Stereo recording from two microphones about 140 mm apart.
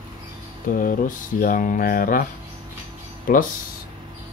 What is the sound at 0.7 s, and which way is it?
Speech, 80° left.